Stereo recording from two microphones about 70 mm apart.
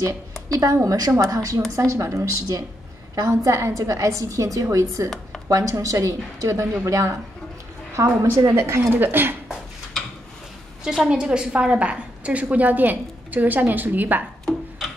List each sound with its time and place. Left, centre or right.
0.5 s a woman's voice: right
11.1 s a woman's voice: centre